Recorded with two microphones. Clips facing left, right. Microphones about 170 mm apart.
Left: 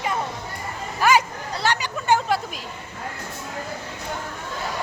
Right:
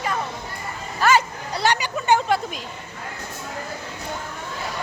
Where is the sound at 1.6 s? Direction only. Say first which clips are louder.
Right 3 dB; 15° right (ahead or behind).